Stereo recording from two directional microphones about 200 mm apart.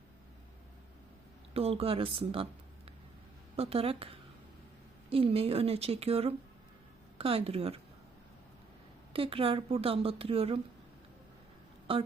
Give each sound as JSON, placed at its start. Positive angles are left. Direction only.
{"t": 1.5, "sound": "a woman's voice", "side_deg": -30}
{"t": 3.6, "sound": "a woman's voice", "side_deg": -30}
{"t": 9.1, "sound": "a woman's voice", "side_deg": -25}